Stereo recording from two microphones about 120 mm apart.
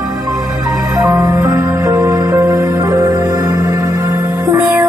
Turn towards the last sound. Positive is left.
turn(degrees=-30)  # may be behind; listen again after turning